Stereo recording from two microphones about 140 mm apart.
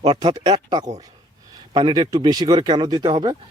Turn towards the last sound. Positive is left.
turn(degrees=-30)  # may be behind; listen again after turning